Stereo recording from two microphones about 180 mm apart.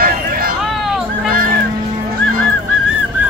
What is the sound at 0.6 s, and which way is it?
Hubbub, centre (ahead or behind).